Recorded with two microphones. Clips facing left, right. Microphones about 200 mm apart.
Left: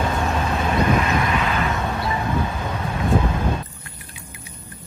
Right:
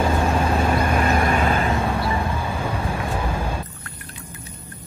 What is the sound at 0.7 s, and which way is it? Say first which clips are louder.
Vehicle: even; 50° right (ahead or behind).